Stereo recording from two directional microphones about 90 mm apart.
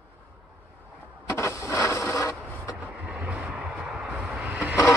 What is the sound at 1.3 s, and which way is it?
Printer, 30° left (ahead or behind).